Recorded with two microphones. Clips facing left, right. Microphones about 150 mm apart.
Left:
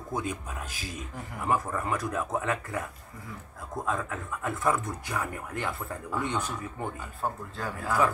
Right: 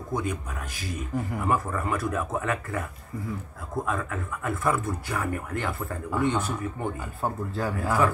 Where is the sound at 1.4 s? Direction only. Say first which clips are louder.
Left 1 dB; 20° left (ahead or behind).